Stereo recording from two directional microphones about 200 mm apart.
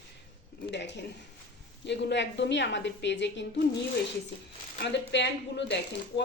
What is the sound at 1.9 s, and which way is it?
Speech, 60° left (ahead or behind).